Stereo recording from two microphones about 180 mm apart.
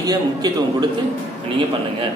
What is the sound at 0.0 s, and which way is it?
Speech, 20° right (ahead or behind).